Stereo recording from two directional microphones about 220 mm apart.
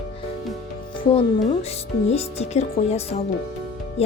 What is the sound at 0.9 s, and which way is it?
A woman's voice, 25° left (ahead or behind).